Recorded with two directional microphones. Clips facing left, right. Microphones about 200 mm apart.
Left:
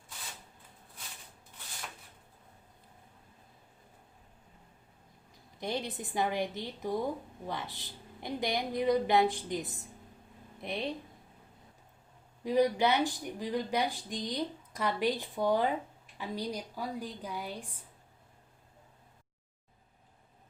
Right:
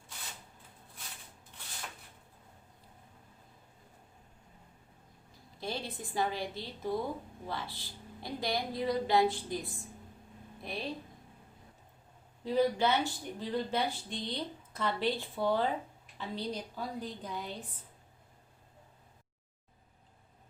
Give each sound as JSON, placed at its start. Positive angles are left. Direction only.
{"t": 5.5, "sound": "a woman's voice", "side_deg": 20}
{"t": 12.5, "sound": "speech", "side_deg": 15}